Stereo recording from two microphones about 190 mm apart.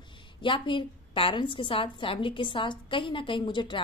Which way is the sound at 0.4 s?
25° left (ahead or behind).